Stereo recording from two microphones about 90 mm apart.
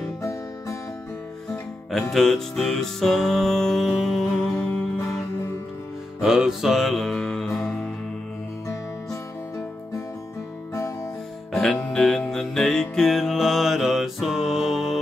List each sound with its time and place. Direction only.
0.2 s music: 35° left (ahead or behind)
1.9 s music: centre (ahead or behind)
6.2 s music: 5° right (ahead or behind)
11.5 s music: 5° left (ahead or behind)